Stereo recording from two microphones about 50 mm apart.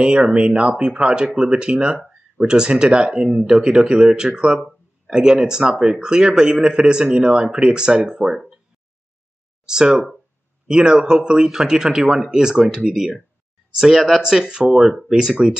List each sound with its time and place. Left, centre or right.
0.0 s a man's voice: centre
9.7 s a man's voice: centre